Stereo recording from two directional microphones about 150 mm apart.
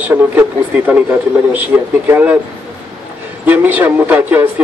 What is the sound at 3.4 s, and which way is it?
Speech, 10° right (ahead or behind).